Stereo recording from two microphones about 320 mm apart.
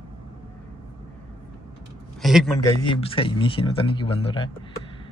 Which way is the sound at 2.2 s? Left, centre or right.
Centre.